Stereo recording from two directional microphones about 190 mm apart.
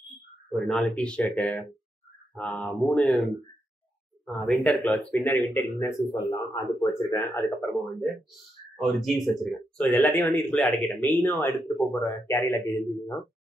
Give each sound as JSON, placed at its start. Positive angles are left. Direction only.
{"t": 0.5, "sound": "speech", "side_deg": 0}
{"t": 4.3, "sound": "speech", "side_deg": 5}
{"t": 5.6, "sound": "speech", "side_deg": 15}
{"t": 8.7, "sound": "speech", "side_deg": 0}